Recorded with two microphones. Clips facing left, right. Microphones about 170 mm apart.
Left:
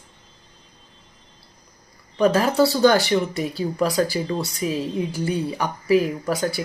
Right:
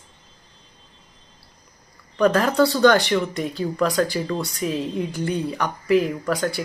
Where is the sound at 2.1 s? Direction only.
5° left (ahead or behind).